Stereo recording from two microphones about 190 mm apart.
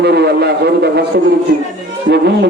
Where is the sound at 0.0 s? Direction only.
60° right (ahead or behind).